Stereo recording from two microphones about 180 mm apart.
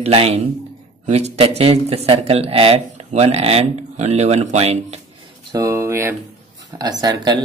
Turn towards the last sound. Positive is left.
turn(degrees=-20)  # may be behind; listen again after turning